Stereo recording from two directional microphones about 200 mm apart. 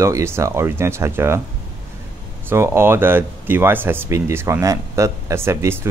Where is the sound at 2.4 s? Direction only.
10° right (ahead or behind).